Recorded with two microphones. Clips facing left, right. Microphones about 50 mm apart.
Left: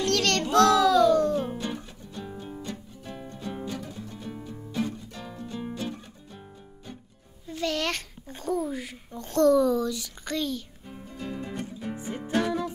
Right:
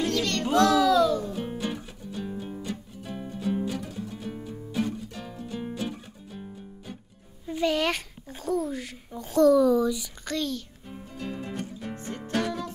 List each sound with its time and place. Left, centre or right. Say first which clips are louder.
0.0 s music: left 2 dB; left
0.6 s music: left 1 dB; centre
0.8 s music: left 2 dB; centre
7.4 s a sound: right 4 dB; centre
10.2 s music: even; centre